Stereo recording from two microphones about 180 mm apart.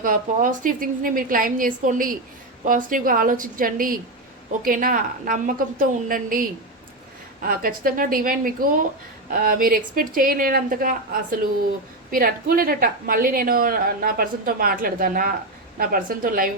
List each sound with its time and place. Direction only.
0.0 s a woman's voice: 50° right (ahead or behind)